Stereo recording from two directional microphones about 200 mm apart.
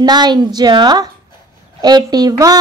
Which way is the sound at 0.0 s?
20° right (ahead or behind).